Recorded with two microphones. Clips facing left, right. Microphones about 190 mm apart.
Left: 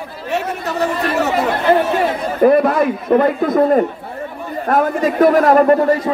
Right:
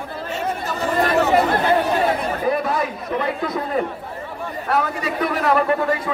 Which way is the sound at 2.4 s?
60° left (ahead or behind).